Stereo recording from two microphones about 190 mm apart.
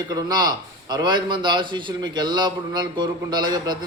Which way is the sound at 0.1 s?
20° right (ahead or behind).